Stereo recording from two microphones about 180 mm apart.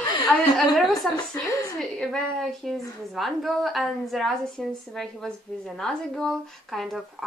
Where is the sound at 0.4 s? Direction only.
Centre (ahead or behind).